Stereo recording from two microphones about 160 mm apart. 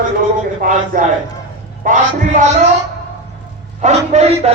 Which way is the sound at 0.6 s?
60° right (ahead or behind).